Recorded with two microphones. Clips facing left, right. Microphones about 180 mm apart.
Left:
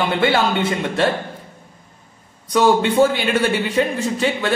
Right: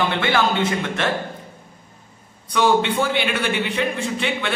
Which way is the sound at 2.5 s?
40° left (ahead or behind).